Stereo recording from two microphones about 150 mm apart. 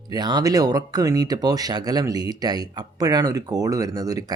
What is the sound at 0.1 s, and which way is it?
Speech, 30° right (ahead or behind).